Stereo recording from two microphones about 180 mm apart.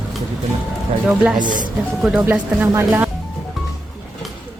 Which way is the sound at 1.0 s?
5° right (ahead or behind).